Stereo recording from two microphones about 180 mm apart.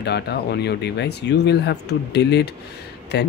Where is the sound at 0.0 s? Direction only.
65° left (ahead or behind).